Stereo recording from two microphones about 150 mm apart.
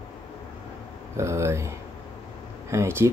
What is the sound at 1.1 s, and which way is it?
Speech, 20° right (ahead or behind).